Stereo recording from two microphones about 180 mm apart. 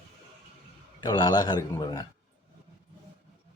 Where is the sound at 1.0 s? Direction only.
25° left (ahead or behind).